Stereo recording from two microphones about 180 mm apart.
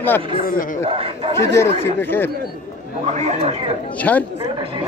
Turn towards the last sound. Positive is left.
turn(degrees=10)  # may be behind; listen again after turning